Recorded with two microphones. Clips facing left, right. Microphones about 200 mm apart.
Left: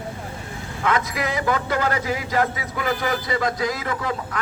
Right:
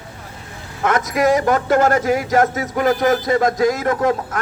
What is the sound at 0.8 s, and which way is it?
A man's voice, 45° right (ahead or behind).